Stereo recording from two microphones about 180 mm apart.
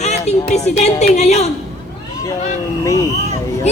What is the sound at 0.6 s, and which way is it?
Speech, 40° left (ahead or behind).